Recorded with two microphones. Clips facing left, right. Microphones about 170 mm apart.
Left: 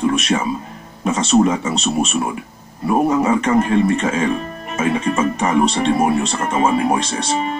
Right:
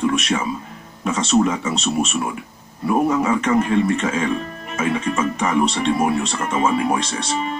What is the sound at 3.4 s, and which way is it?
Speech, 35° left (ahead or behind).